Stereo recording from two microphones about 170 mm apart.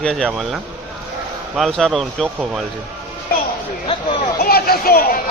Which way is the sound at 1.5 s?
Centre (ahead or behind).